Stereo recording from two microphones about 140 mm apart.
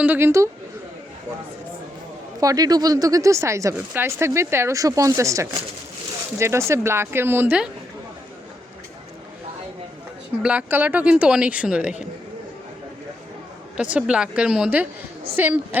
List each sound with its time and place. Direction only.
0.0 s a woman's voice: 15° right (ahead or behind)
2.4 s a woman's voice: 25° right (ahead or behind)
10.4 s a woman's voice: 10° right (ahead or behind)
13.7 s a woman's voice: 10° right (ahead or behind)